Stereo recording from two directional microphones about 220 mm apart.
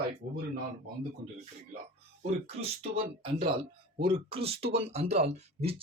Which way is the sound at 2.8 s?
25° right (ahead or behind).